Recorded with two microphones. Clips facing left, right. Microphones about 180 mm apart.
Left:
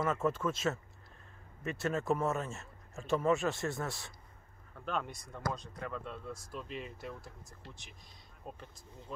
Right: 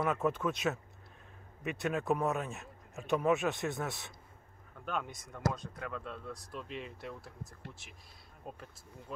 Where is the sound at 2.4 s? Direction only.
15° right (ahead or behind).